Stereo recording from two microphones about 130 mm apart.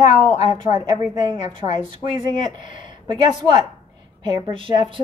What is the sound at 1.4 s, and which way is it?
Speech, 65° left (ahead or behind).